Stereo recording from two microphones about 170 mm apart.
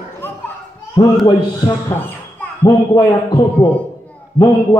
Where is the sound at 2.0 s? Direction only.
10° left (ahead or behind).